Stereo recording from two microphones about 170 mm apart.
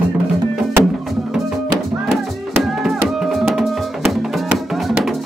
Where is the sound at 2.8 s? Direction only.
Centre (ahead or behind).